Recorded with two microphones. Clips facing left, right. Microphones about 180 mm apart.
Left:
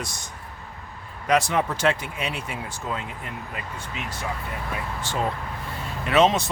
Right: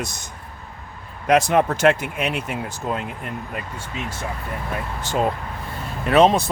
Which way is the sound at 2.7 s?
55° right (ahead or behind).